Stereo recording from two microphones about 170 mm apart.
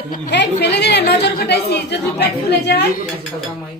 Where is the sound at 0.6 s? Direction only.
90° left.